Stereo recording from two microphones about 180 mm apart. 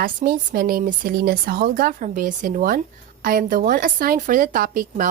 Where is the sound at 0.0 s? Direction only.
55° right (ahead or behind).